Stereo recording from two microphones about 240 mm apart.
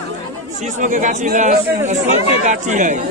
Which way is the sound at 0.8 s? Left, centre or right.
Right.